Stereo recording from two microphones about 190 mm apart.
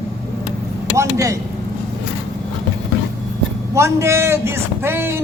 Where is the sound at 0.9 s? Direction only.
15° right (ahead or behind).